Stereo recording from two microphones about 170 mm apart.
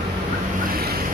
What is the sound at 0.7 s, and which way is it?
Vehicle, 65° right (ahead or behind).